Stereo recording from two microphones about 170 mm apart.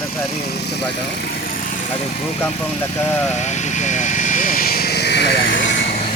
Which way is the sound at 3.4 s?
45° left (ahead or behind).